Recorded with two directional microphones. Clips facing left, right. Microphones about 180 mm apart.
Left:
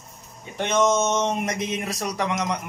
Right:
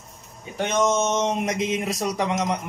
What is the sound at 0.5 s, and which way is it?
Speech, 5° right (ahead or behind).